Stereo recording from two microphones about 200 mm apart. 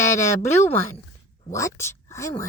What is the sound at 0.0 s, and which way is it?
A woman's voice, 15° left (ahead or behind).